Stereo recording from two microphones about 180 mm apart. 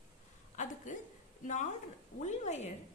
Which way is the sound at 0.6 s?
45° left (ahead or behind).